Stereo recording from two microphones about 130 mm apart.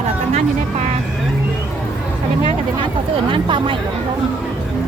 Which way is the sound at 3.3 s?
40° right (ahead or behind).